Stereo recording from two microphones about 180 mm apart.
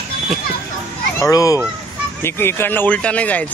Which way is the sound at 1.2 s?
20° left (ahead or behind).